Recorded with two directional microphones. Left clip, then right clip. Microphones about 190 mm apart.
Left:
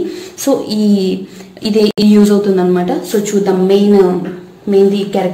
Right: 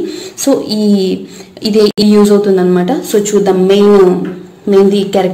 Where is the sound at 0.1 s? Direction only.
20° right (ahead or behind).